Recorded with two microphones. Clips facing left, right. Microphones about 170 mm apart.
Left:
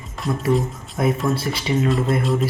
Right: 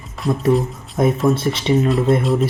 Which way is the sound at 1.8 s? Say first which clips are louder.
Right 4 dB; centre (ahead or behind).